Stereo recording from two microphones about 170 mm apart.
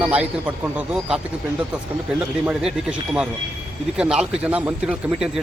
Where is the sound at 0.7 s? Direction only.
5° right (ahead or behind).